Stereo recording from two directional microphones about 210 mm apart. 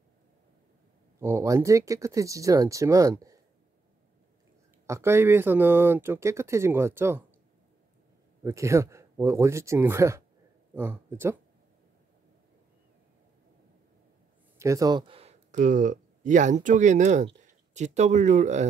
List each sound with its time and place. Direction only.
1.2 s speech: 10° right (ahead or behind)
4.8 s speech: 10° right (ahead or behind)
8.5 s speech: 15° right (ahead or behind)
14.6 s speech: 15° right (ahead or behind); by 18.7 s 35° right (ahead or behind)